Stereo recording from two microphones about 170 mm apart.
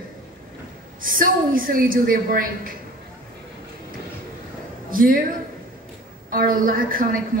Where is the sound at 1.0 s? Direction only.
55° right (ahead or behind).